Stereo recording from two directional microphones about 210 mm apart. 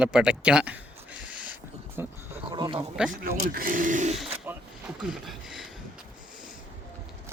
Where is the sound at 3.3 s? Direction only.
45° right (ahead or behind).